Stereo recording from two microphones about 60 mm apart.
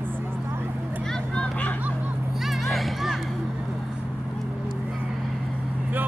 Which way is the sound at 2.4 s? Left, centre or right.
Centre.